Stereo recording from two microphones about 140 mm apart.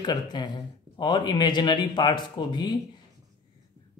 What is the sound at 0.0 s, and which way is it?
Speech, 30° left (ahead or behind).